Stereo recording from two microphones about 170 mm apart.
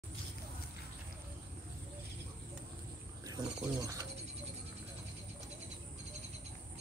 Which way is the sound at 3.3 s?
20° right (ahead or behind).